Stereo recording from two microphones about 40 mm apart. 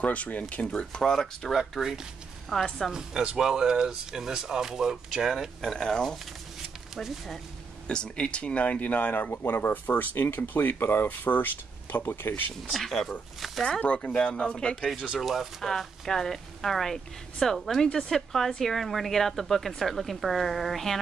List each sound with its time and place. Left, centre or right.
0.0 s speech: left
0.7 s speech: left
1.1 s speech: centre
1.6 s speech: centre
2.5 s speech: centre
2.9 s a woman's voice: centre
5.6 s speech: centre
7.8 s speech: left
11.1 s speech: left
12.7 s speech: centre
13.7 s speech: left
15.1 s a woman's voice: centre